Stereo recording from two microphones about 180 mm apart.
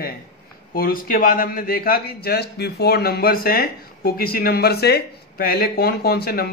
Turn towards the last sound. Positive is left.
turn(degrees=60)  # may be behind; listen again after turning